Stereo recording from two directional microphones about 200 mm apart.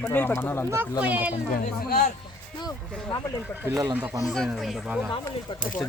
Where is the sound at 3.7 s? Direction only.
20° right (ahead or behind).